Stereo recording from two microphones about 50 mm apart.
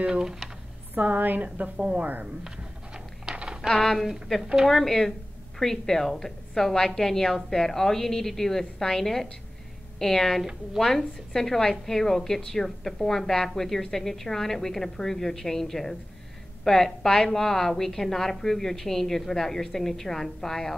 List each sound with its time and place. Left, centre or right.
0.0 s speech: centre
0.9 s a woman's voice: right
1.8 s speech: right
2.4 s a sound: centre
3.6 s a woman's voice: centre